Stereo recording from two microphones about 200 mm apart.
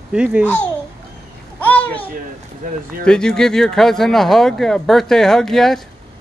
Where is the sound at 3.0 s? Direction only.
5° left (ahead or behind).